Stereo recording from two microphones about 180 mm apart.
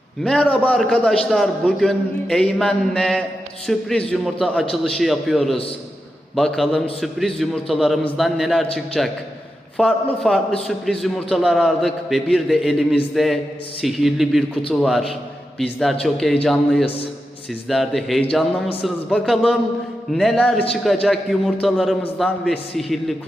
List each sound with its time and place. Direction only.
0.2 s a man's voice: 5° left (ahead or behind)
16.8 s a man's voice: 30° left (ahead or behind)
17.7 s a man's voice: centre (ahead or behind)